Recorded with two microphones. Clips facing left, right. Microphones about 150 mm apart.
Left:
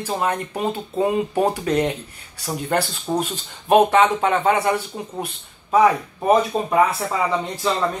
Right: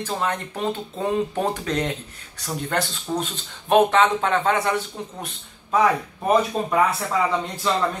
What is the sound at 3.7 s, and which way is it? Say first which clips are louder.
Speech: left 2 dB; 10° left (ahead or behind).